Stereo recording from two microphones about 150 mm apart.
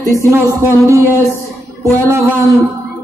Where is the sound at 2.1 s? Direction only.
20° right (ahead or behind).